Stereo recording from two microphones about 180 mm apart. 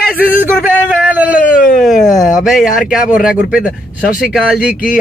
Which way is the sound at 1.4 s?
50° left (ahead or behind).